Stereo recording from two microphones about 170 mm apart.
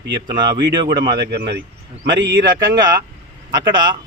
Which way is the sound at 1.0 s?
75° right (ahead or behind).